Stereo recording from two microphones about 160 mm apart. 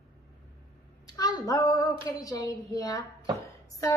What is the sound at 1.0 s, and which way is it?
A woman's voice, 25° left (ahead or behind).